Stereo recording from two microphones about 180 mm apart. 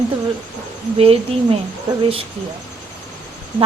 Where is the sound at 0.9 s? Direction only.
35° right (ahead or behind).